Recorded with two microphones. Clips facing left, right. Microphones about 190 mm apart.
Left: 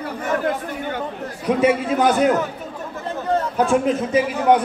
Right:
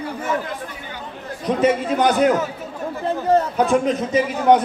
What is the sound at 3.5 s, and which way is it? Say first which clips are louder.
A man's voice: even; 5° left (ahead or behind).